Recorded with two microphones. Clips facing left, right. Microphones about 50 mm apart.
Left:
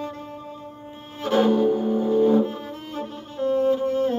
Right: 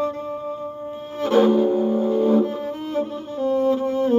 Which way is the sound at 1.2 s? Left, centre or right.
Right.